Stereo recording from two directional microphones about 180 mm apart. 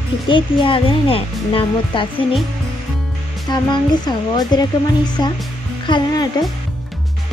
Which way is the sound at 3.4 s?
25° left (ahead or behind).